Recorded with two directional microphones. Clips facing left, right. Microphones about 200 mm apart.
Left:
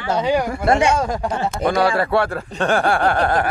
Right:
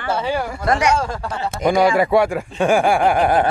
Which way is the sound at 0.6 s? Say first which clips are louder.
Even; 25° left (ahead or behind).